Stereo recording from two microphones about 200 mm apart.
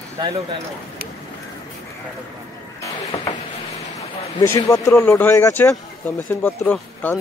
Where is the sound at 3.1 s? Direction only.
30° left (ahead or behind).